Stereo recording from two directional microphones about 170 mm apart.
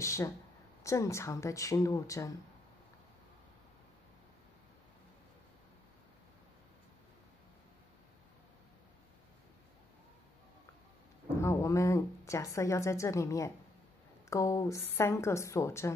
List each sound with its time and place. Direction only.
0.0 s a woman's voice: 15° left (ahead or behind)
11.4 s a woman's voice: 15° left (ahead or behind)